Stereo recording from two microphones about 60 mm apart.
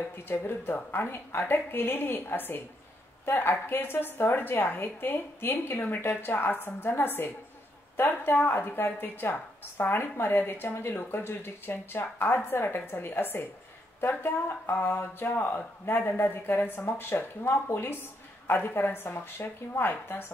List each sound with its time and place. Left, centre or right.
0.1 s a woman's voice: left